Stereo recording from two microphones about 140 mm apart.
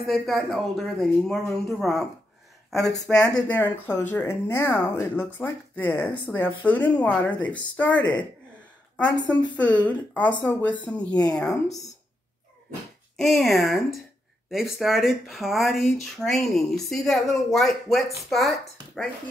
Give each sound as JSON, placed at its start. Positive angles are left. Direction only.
{"t": 0.1, "sound": "speech", "side_deg": 0}
{"t": 2.8, "sound": "speech", "side_deg": 25}
{"t": 3.1, "sound": "speech", "side_deg": 5}
{"t": 9.1, "sound": "speech", "side_deg": 30}
{"t": 9.8, "sound": "speech", "side_deg": 10}
{"t": 13.2, "sound": "speech", "side_deg": 0}